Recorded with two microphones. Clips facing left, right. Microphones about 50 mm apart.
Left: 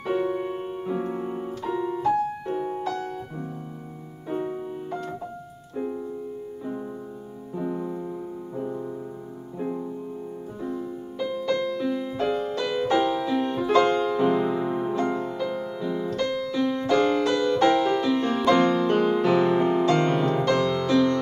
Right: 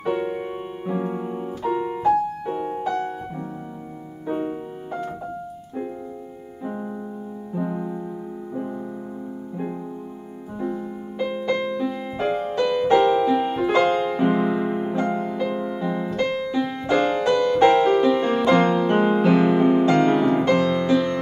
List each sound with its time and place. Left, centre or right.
0.2 s piano: right; by 1.5 s centre
1.7 s piano: right
2.5 s music: right
7.5 s music: centre
9.6 s music: centre
11.8 s music: centre
12.2 s music: right
12.6 s music: centre
12.9 s music: right
13.3 s music: centre
14.4 s music: right
17.7 s music: right